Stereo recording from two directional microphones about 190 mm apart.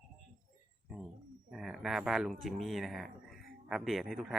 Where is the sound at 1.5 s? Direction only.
Centre (ahead or behind).